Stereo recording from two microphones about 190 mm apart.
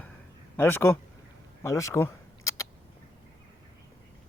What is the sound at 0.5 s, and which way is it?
Speech, 10° left (ahead or behind).